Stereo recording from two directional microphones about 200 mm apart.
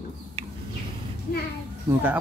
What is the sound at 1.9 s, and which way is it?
Speech, 15° right (ahead or behind).